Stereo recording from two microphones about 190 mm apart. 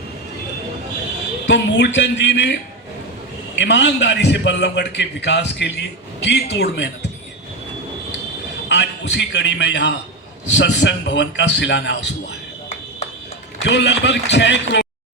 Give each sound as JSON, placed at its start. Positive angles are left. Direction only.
{"t": 1.5, "sound": "a man's voice", "side_deg": 70}
{"t": 3.6, "sound": "a man's voice", "side_deg": 70}
{"t": 8.7, "sound": "a man's voice", "side_deg": 65}
{"t": 13.6, "sound": "a man's voice", "side_deg": 70}